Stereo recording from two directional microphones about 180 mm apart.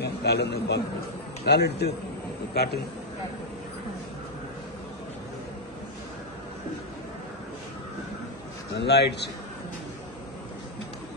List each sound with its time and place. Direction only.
0.0 s a man's voice: 65° left (ahead or behind)
8.7 s a man's voice: 70° left (ahead or behind)